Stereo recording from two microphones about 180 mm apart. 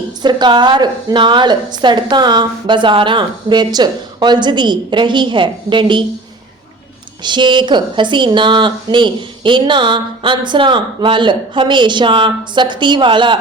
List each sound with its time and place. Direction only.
0.2 s a woman's voice: 25° right (ahead or behind)
7.2 s a woman's voice: 25° right (ahead or behind)